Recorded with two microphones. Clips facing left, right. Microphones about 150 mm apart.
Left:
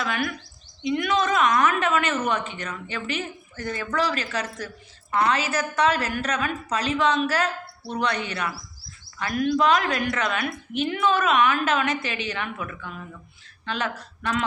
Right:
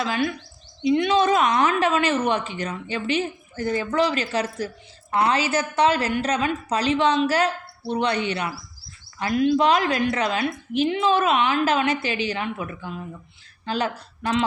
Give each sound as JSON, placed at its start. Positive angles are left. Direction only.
{"t": 0.0, "sound": "a woman's voice", "side_deg": -30}